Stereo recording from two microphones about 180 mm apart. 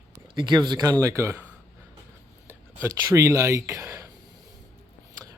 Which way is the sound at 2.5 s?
15° right (ahead or behind).